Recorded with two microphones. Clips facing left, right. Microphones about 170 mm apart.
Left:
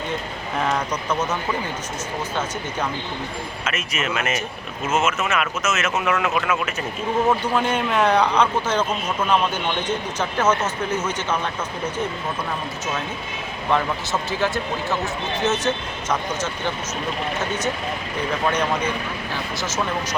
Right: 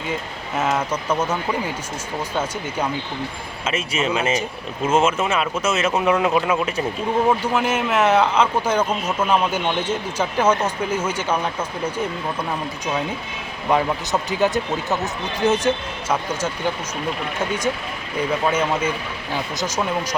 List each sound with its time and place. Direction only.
0.6 s speech: 5° right (ahead or behind)
3.6 s speech: 30° right (ahead or behind)
7.3 s speech: 10° right (ahead or behind)
13.7 s speech: 15° right (ahead or behind)
19.5 s speech: 15° right (ahead or behind)